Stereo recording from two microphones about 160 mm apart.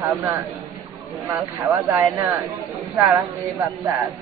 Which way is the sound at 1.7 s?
20° right (ahead or behind).